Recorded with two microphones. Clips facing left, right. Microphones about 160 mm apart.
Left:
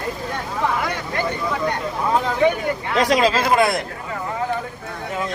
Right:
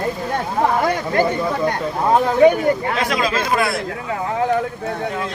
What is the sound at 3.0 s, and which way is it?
Speech, 35° left (ahead or behind).